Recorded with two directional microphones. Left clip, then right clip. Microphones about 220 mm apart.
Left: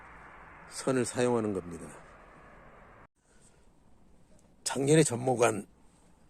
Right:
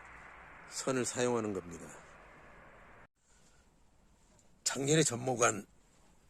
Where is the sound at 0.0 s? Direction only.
20° left (ahead or behind).